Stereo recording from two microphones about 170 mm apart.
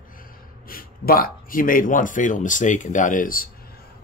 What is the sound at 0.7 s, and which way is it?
Speech, 60° left (ahead or behind).